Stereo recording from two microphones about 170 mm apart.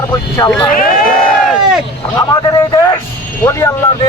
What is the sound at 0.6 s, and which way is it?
Speech, 55° left (ahead or behind).